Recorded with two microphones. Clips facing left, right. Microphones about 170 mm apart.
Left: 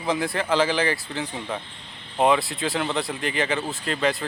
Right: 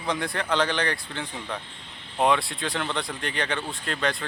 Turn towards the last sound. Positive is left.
turn(degrees=5)  # may be behind; listen again after turning